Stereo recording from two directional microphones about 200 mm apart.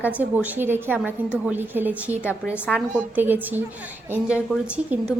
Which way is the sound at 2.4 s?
5° left (ahead or behind).